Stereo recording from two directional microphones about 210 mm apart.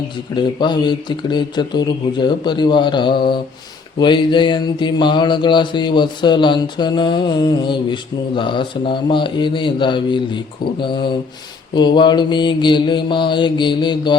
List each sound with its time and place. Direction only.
0.3 s mantra: 20° left (ahead or behind)